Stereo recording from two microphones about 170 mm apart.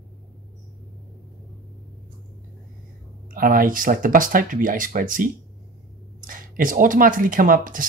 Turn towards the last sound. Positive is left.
turn(degrees=-50)  # may be behind; listen again after turning